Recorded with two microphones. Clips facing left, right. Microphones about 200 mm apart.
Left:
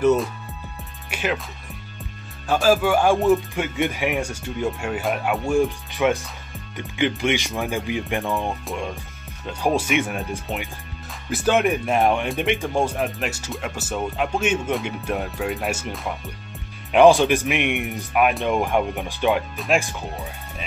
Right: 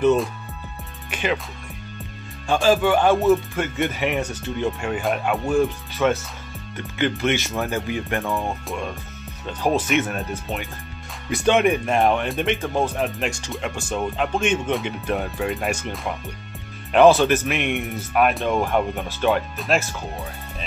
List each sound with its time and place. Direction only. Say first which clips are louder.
0.0 s speech: even; 5° left (ahead or behind)
2.4 s speech: even; 5° left (ahead or behind)
5.6 s speech: even; 15° left (ahead or behind)
9.8 s speech: right 1 dB; 10° left (ahead or behind)
11.2 s speech: right 2 dB; 5° left (ahead or behind)
12.9 s speech: right 1 dB; centre (ahead or behind)